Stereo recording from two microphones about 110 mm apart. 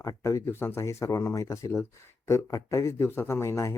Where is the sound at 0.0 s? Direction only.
30° left (ahead or behind).